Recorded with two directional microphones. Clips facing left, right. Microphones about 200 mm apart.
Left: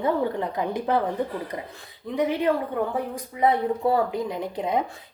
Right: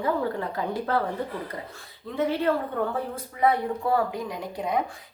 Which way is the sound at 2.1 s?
15° left (ahead or behind).